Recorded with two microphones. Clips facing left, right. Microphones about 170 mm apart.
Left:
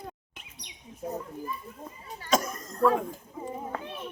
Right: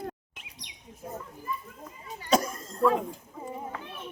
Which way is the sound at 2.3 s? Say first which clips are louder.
Right 2 dB; 30° right (ahead or behind).